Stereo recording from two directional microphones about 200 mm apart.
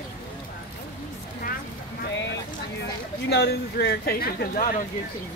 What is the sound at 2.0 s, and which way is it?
Speech, 65° left (ahead or behind).